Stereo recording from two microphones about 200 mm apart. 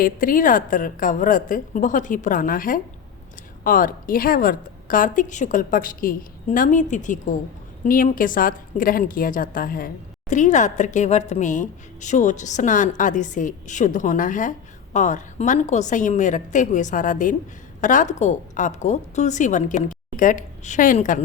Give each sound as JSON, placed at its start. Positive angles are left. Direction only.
{"t": 0.0, "sound": "a woman's voice", "side_deg": 45}